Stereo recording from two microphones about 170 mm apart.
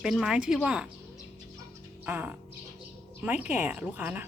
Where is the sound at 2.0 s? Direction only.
10° right (ahead or behind).